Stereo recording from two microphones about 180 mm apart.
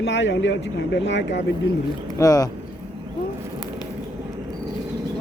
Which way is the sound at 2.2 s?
20° left (ahead or behind).